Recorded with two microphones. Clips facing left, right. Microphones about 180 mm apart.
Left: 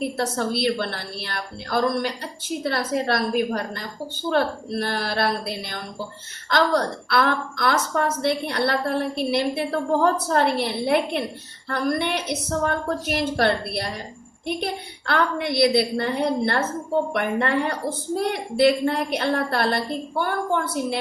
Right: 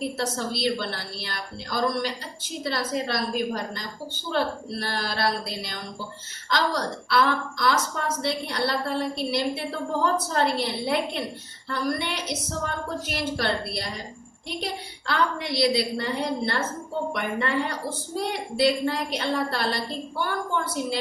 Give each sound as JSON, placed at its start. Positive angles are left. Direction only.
{"t": 0.0, "sound": "a woman's voice", "side_deg": 60}